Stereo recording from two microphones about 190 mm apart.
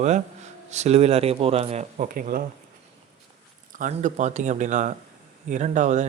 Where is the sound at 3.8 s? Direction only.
40° right (ahead or behind).